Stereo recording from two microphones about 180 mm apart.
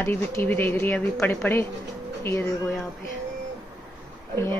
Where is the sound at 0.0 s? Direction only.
10° left (ahead or behind).